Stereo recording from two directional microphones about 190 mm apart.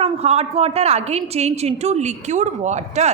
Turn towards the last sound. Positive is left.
turn(degrees=-40)  # may be behind; listen again after turning